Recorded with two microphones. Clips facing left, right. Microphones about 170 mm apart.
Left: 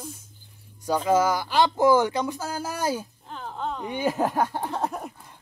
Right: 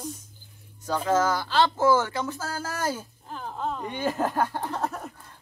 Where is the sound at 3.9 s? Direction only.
10° left (ahead or behind).